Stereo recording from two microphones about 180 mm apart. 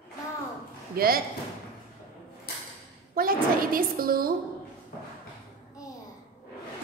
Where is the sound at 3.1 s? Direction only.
55° right (ahead or behind).